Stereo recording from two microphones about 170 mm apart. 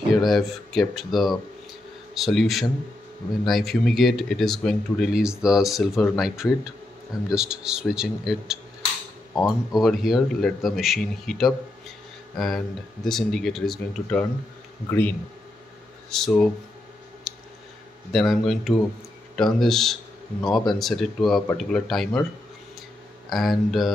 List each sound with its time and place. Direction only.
0.1 s speech: centre (ahead or behind)
9.7 s speech: centre (ahead or behind)
17.3 s clicking: centre (ahead or behind)
18.1 s speech: centre (ahead or behind)
23.3 s speech: centre (ahead or behind)